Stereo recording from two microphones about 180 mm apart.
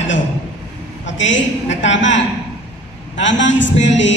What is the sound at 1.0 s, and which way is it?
A woman's voice, 90° left.